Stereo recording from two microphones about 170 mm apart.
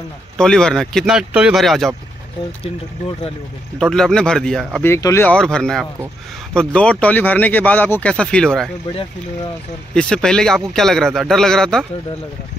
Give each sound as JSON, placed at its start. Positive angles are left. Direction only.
{"t": 0.4, "sound": "speech", "side_deg": 5}
{"t": 3.8, "sound": "speech", "side_deg": 5}
{"t": 4.8, "sound": "speech", "side_deg": 15}
{"t": 9.9, "sound": "speech", "side_deg": 5}